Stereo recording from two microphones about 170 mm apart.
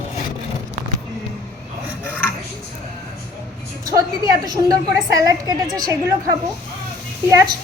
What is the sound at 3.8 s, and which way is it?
A woman's voice, 20° right (ahead or behind).